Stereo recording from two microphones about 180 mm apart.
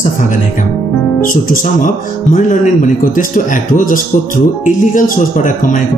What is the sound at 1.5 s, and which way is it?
Speech, 50° left (ahead or behind).